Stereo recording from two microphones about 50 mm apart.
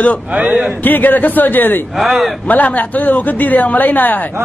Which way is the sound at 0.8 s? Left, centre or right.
Left.